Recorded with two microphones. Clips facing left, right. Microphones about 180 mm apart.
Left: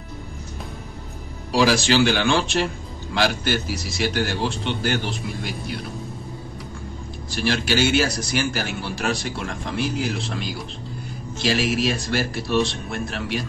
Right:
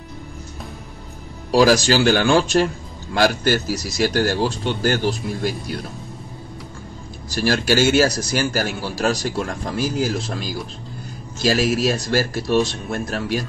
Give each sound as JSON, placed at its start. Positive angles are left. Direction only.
{"t": 1.5, "sound": "speech", "side_deg": -45}
{"t": 7.2, "sound": "a man's voice", "side_deg": -40}